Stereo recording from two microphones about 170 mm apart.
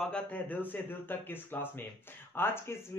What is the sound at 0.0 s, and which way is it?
Speech, 5° left (ahead or behind).